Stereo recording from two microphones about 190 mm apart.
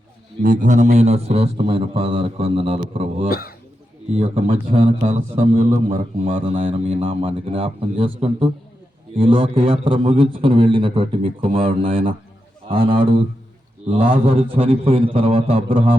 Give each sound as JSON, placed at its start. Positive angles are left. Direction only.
{"t": 0.4, "sound": "a man's voice", "side_deg": -45}
{"t": 3.2, "sound": "speech", "side_deg": 55}
{"t": 4.1, "sound": "a man's voice", "side_deg": -35}
{"t": 6.2, "sound": "a man's voice", "side_deg": -30}